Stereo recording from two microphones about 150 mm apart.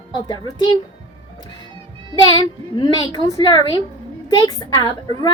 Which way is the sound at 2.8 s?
30° left (ahead or behind).